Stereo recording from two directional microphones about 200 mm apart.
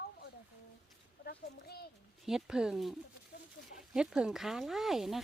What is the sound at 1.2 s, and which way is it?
Speech, 50° left (ahead or behind).